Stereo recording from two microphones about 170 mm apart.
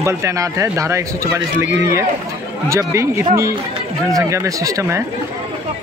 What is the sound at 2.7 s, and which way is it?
A man's voice, 15° right (ahead or behind).